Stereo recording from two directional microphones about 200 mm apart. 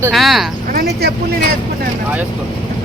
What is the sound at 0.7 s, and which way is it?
Speech, 50° right (ahead or behind).